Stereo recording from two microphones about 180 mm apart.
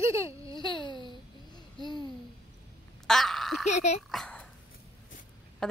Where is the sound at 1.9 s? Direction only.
25° right (ahead or behind).